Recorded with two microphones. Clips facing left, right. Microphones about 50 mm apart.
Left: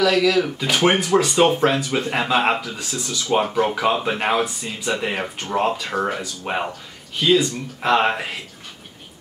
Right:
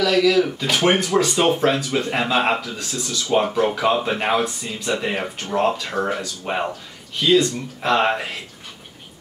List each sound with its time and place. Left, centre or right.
0.0 s speech: centre